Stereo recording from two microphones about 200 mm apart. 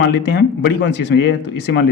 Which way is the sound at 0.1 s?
60° left (ahead or behind).